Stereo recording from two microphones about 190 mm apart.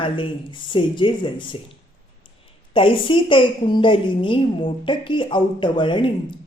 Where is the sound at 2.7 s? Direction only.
25° left (ahead or behind).